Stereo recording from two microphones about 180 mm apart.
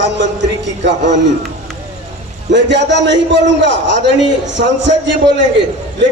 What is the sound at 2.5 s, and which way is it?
A man's voice, 75° right (ahead or behind).